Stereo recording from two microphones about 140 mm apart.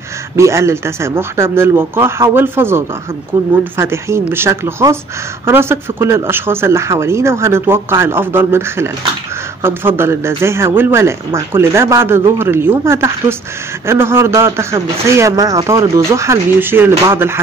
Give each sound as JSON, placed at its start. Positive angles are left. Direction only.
{"t": 0.4, "sound": "speech", "side_deg": -20}